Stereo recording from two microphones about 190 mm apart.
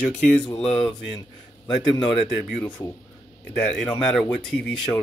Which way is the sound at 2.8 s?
20° left (ahead or behind).